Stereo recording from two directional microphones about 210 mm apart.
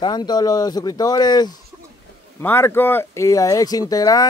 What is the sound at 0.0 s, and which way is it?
Speech, 20° left (ahead or behind).